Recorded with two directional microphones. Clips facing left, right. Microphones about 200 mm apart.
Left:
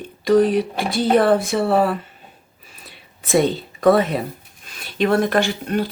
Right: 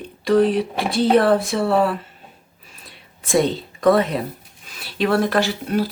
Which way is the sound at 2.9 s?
Centre (ahead or behind).